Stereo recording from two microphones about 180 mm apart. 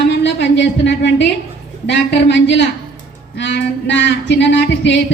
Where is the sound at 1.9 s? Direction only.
80° left.